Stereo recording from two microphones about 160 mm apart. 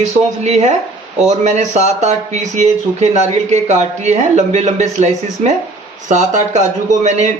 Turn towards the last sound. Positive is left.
turn(degrees=-50)  # may be behind; listen again after turning